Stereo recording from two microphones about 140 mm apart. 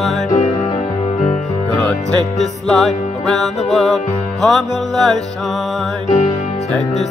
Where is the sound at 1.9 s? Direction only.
Centre (ahead or behind).